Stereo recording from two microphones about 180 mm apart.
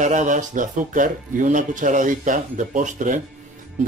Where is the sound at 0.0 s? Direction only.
45° right (ahead or behind).